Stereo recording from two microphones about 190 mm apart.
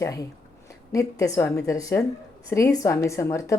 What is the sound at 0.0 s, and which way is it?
Speech, 20° left (ahead or behind).